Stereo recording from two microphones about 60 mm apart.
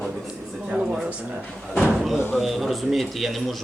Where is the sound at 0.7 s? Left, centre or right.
Centre.